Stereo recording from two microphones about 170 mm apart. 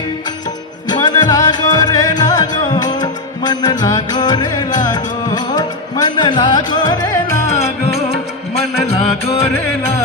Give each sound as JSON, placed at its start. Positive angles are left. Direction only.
{"t": 0.9, "sound": "music", "side_deg": 25}
{"t": 7.4, "sound": "music", "side_deg": 40}